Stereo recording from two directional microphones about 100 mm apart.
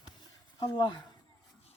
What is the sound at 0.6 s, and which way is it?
Speech, 45° left (ahead or behind).